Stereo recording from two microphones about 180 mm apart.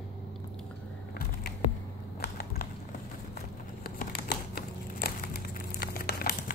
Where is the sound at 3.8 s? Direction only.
60° left (ahead or behind).